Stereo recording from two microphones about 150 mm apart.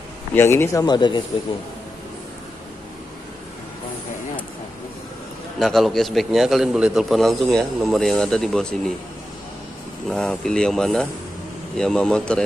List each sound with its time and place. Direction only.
0.3 s speech: 15° left (ahead or behind)
0.8 s speech: 30° left (ahead or behind)
5.6 s a man's voice: centre (ahead or behind)
10.0 s a man's voice: 5° left (ahead or behind)